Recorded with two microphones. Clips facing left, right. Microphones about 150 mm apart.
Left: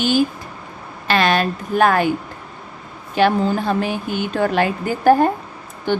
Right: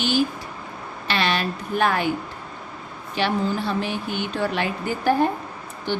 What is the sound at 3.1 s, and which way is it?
Speech, 45° left (ahead or behind).